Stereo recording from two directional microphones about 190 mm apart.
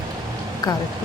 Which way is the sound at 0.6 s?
20° left (ahead or behind).